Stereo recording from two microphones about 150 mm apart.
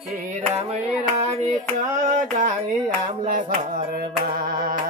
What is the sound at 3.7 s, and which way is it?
Music, 75° right (ahead or behind).